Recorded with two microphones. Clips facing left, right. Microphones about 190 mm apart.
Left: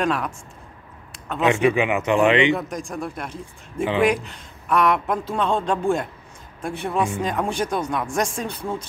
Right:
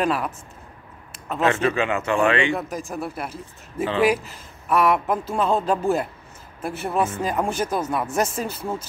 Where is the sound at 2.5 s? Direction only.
5° right (ahead or behind).